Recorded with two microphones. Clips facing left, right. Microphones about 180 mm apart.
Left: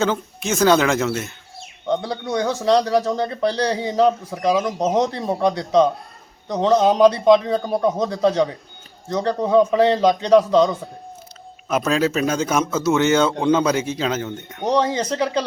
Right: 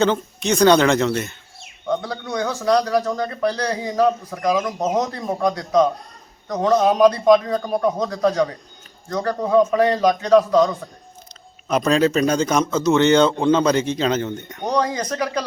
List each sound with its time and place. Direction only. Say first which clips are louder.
0.0 s speech: right 2 dB; 5° left (ahead or behind)
1.9 s speech: left 2 dB; 25° left (ahead or behind)
11.7 s speech: right 2 dB; 5° left (ahead or behind)
14.7 s speech: left 2 dB; 25° left (ahead or behind)